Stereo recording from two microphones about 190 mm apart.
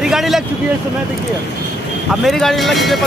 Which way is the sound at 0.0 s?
Centre (ahead or behind).